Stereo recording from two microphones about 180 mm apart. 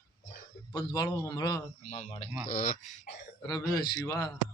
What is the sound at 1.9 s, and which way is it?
Speech, 40° left (ahead or behind).